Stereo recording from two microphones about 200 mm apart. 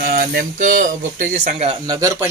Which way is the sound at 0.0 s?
50° right (ahead or behind).